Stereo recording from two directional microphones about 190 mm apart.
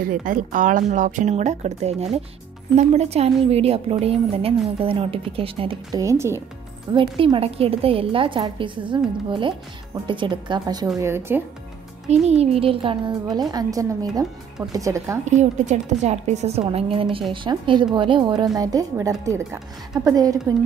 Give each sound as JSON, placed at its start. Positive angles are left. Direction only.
{"t": 0.0, "sound": "a woman's voice", "side_deg": -45}
{"t": 6.9, "sound": "a woman's voice", "side_deg": -25}
{"t": 12.1, "sound": "a woman's voice", "side_deg": -35}
{"t": 15.2, "sound": "a woman's voice", "side_deg": -40}